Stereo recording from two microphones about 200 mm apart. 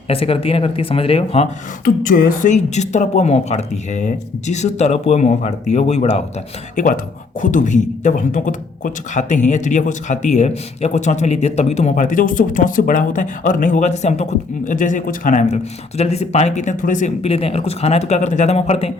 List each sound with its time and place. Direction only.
0.1 s speech: 30° left (ahead or behind)
1.8 s speech: 45° left (ahead or behind)